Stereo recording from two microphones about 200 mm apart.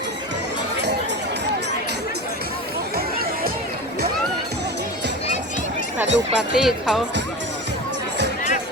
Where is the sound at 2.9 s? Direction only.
50° right (ahead or behind).